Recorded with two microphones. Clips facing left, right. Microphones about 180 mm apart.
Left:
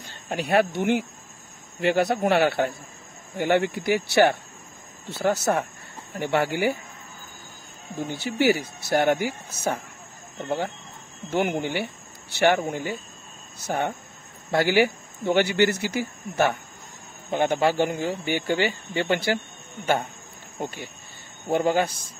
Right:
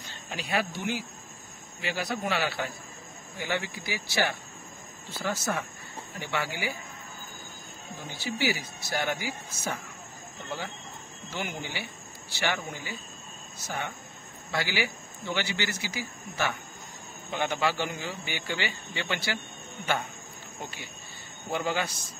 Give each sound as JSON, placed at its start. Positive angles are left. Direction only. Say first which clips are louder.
{"t": 0.3, "sound": "speech", "louder": "left 9 dB", "side_deg": 55}
{"t": 8.0, "sound": "speech", "louder": "left 8 dB", "side_deg": 60}
{"t": 11.2, "sound": "speech", "louder": "left 11 dB", "side_deg": 55}
{"t": 20.6, "sound": "speech", "louder": "left 10 dB", "side_deg": 45}